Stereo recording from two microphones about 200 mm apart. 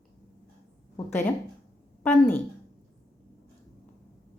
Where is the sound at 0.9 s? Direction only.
10° left (ahead or behind).